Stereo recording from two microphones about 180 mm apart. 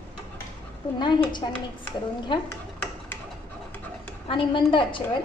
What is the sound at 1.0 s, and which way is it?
Speech, 25° left (ahead or behind).